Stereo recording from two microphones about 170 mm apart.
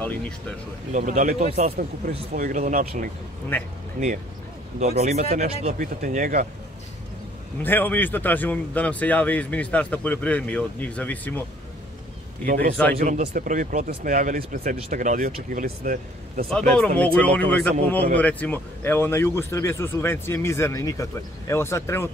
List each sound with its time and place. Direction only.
0.0 s speech: 10° left (ahead or behind)
0.9 s speech: 50° right (ahead or behind)
3.5 s speech: 10° left (ahead or behind)
4.7 s speech: 40° right (ahead or behind)
5.8 s speech: 55° right (ahead or behind)
7.6 s speech: 10° left (ahead or behind)
12.4 s a man's voice: 60° right (ahead or behind)
16.4 s speech: 5° left (ahead or behind)